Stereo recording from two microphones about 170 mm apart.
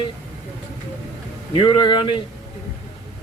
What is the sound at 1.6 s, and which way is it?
Speech, 25° left (ahead or behind).